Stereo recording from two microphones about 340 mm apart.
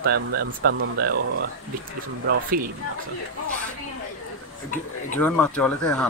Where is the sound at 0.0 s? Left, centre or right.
Right.